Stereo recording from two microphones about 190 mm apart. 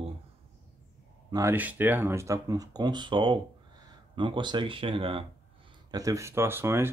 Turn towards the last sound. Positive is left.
turn(degrees=-10)  # may be behind; listen again after turning